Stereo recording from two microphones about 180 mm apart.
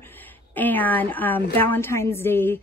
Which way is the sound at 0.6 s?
10° left (ahead or behind).